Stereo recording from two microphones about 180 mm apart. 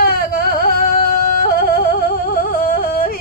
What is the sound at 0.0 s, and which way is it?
Yodeling, 55° left (ahead or behind).